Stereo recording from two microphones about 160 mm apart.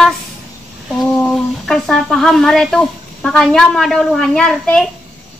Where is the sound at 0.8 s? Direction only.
5° left (ahead or behind).